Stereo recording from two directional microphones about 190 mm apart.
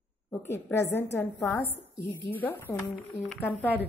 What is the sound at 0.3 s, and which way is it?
A woman's voice, 10° left (ahead or behind).